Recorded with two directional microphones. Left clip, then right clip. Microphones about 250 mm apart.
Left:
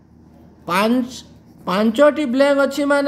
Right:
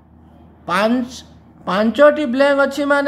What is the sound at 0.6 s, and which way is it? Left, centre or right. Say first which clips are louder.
Speech: right 1 dB; centre.